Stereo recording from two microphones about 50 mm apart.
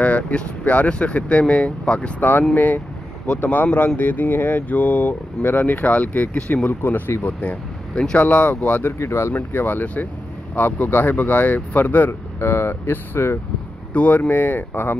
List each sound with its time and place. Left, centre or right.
0.0 s speech: left
2.1 s speech: left
7.9 s speech: centre
8.2 s speech: left
8.9 s speech: left
9.3 s speech: left
12.1 s speech: left
13.9 s speech: left
14.3 s speech: left